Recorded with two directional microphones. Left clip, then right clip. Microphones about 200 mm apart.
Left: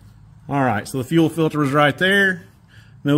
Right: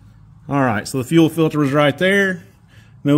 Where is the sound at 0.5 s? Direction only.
20° right (ahead or behind).